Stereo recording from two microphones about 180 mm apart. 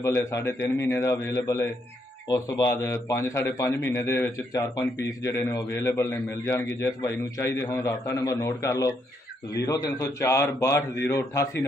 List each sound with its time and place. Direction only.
0.0 s a man's voice: 15° left (ahead or behind)